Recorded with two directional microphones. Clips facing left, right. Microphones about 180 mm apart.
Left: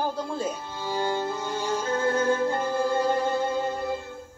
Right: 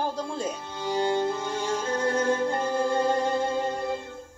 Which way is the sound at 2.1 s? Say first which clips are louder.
Left 1 dB; 20° right (ahead or behind).